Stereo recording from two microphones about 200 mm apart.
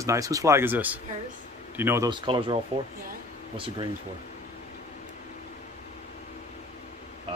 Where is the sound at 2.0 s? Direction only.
25° right (ahead or behind).